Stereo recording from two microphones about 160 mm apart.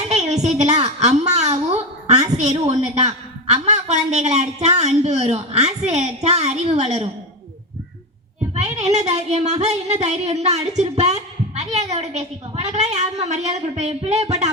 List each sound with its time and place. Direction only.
0.1 s a woman's voice: 45° right (ahead or behind)
8.5 s a woman's voice: 45° right (ahead or behind)